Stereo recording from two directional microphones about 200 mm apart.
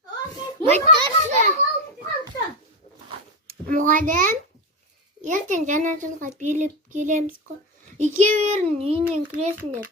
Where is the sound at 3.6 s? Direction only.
45° right (ahead or behind).